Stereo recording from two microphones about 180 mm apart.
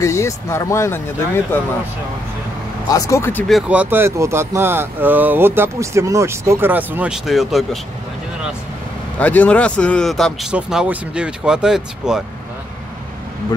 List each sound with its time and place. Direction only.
0.0 s speech: 15° left (ahead or behind)
2.9 s speech: 20° left (ahead or behind)
3.4 s speech: 5° right (ahead or behind)
9.2 s a man's voice: 10° left (ahead or behind)